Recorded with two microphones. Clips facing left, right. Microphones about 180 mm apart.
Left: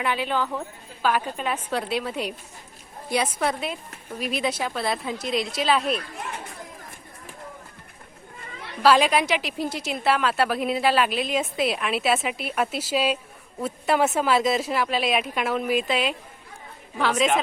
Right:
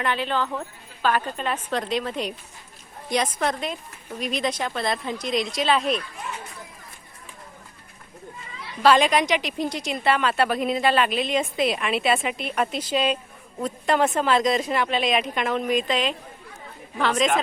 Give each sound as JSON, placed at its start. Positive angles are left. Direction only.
{"t": 0.0, "sound": "a woman's voice", "side_deg": 10}
{"t": 8.4, "sound": "children playing", "side_deg": 55}
{"t": 8.8, "sound": "a woman's voice", "side_deg": 5}